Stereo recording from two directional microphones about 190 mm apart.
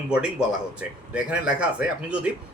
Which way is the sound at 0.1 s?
5° right (ahead or behind).